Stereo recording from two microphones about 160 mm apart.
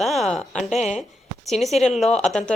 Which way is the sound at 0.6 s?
45° left (ahead or behind).